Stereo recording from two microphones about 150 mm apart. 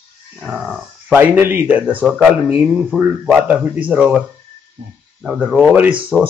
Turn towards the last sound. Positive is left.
turn(degrees=-10)  # may be behind; listen again after turning